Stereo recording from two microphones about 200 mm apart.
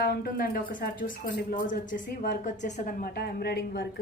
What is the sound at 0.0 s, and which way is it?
A woman's voice, 50° left (ahead or behind).